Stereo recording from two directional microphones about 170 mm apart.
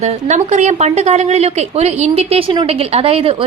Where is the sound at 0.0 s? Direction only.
40° right (ahead or behind).